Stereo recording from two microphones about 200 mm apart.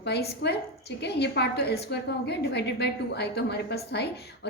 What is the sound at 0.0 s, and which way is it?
A woman's voice, 55° left (ahead or behind).